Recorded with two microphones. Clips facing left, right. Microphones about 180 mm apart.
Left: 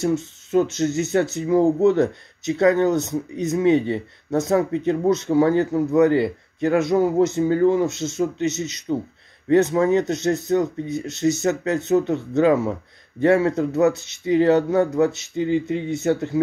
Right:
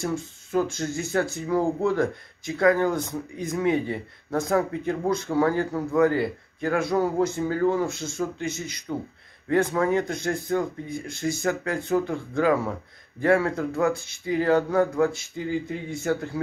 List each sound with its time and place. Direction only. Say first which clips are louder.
0.0 s speech: left 7 dB; 25° left (ahead or behind)